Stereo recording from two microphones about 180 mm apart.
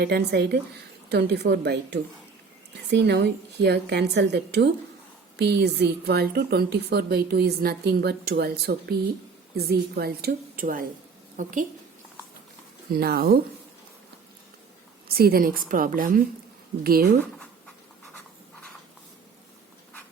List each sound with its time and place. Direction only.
0.0 s a woman's voice: 65° right (ahead or behind); by 11.5 s 45° right (ahead or behind)
12.9 s a woman's voice: 60° right (ahead or behind)
15.0 s a woman's voice: 55° right (ahead or behind)